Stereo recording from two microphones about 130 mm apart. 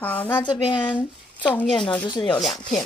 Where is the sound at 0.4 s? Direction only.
35° left (ahead or behind).